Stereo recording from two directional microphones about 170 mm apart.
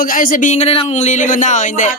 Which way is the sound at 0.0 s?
55° left (ahead or behind).